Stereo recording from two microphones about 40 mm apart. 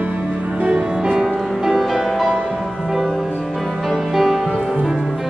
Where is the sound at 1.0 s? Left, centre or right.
Centre.